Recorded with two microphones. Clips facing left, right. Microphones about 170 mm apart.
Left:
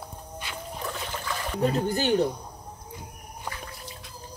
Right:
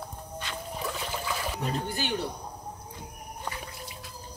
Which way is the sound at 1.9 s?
40° left (ahead or behind).